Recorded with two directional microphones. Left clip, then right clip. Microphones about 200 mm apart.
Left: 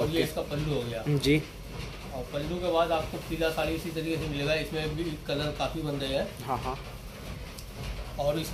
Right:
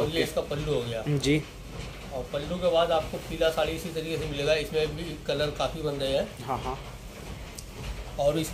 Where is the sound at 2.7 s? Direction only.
45° right (ahead or behind).